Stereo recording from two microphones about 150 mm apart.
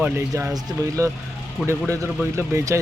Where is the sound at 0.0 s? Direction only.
10° right (ahead or behind).